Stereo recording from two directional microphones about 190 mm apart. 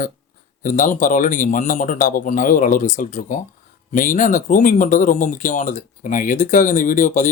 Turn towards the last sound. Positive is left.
turn(degrees=40)  # may be behind; listen again after turning